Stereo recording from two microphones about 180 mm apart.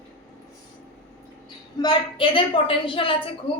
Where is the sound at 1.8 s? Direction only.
25° left (ahead or behind).